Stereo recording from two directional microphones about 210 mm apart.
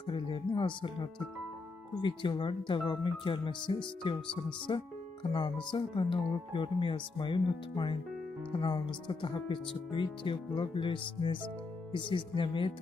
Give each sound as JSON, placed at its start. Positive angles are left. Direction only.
{"t": 0.0, "sound": "speech", "side_deg": 25}
{"t": 2.0, "sound": "speech", "side_deg": 20}